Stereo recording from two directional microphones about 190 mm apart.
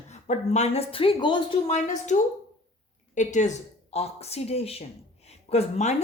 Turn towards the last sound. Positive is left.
turn(degrees=35)  # may be behind; listen again after turning